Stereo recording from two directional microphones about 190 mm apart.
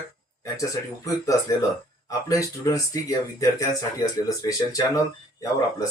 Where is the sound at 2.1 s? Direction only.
15° left (ahead or behind).